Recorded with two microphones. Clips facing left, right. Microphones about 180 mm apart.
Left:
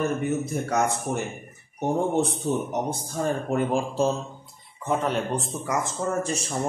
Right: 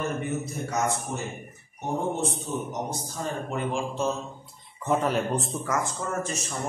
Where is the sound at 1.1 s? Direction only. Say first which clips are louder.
Left 4 dB; 55° left (ahead or behind); by 4.1 s 35° left (ahead or behind).